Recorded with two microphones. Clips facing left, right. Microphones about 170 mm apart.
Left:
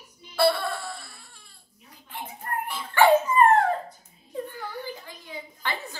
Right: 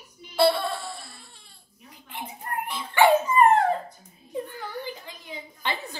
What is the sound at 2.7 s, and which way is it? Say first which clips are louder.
Dog: even; 15° right (ahead or behind).